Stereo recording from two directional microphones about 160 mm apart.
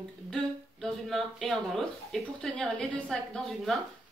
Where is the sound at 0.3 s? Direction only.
5° left (ahead or behind).